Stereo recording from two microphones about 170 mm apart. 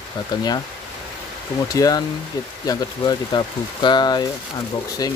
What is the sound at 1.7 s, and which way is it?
Speech, 20° left (ahead or behind).